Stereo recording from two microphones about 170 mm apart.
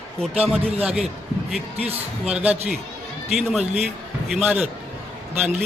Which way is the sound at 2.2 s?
5° right (ahead or behind).